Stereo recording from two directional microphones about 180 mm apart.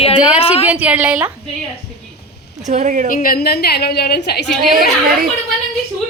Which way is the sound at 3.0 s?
50° left (ahead or behind).